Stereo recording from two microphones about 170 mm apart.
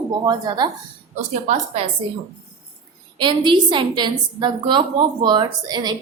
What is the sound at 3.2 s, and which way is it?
A woman's voice, 25° right (ahead or behind).